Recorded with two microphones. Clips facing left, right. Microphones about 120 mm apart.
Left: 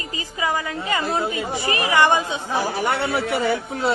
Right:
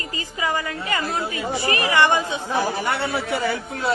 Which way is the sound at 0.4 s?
15° left (ahead or behind).